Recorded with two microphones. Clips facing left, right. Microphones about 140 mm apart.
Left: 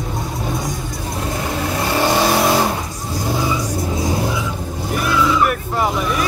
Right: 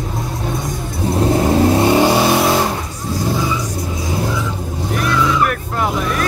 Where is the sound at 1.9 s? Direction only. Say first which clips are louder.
Right 4 dB; 15° right (ahead or behind).